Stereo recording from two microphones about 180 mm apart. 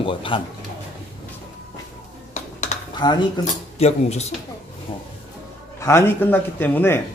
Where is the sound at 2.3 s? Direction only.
40° left (ahead or behind).